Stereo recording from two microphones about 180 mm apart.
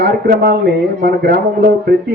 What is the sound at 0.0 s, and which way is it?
Speech, 55° right (ahead or behind).